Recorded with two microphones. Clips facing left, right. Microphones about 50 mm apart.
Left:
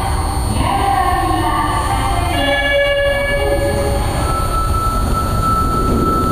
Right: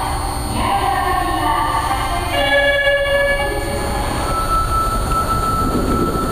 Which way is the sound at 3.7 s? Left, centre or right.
Centre.